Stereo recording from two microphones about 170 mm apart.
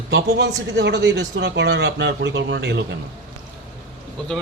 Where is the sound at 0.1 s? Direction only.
90° right.